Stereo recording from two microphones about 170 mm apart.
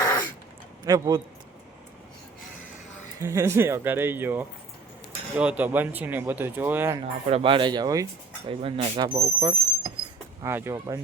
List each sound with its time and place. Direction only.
0.0 s a sound: 20° left (ahead or behind)
0.9 s speech: 20° right (ahead or behind)
3.2 s speech: 15° right (ahead or behind)
7.3 s speech: 35° right (ahead or behind)
8.4 s speech: 35° right (ahead or behind)
9.1 s speech: 15° right (ahead or behind)